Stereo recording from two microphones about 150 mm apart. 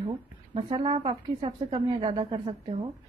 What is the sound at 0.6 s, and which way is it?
A woman's voice, 35° right (ahead or behind).